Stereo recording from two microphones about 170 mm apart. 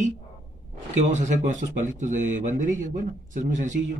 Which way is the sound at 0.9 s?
45° right (ahead or behind).